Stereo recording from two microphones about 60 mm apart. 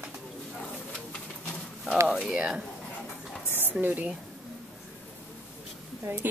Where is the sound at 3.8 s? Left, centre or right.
Right.